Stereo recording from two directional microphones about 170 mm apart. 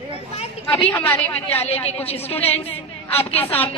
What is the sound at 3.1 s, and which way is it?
Speech, 35° left (ahead or behind).